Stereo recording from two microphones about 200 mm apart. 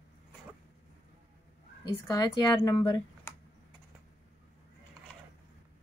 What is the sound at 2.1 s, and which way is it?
Speech, 20° left (ahead or behind).